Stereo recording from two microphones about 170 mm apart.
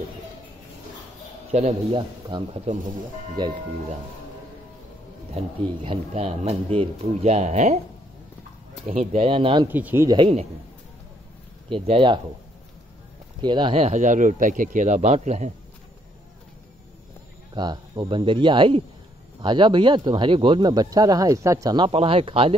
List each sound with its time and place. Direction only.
1.5 s speech: 40° right (ahead or behind)
2.0 s speech: 30° right (ahead or behind)
5.9 s speech: 35° right (ahead or behind)
8.8 s speech: 40° right (ahead or behind)
9.7 s speech: 10° right (ahead or behind)
10.0 s speech: 25° right (ahead or behind)
11.7 s speech: 30° right (ahead or behind)
13.4 s speech: 25° right (ahead or behind); by 15.5 s 40° right (ahead or behind)
17.6 s speech: 25° right (ahead or behind)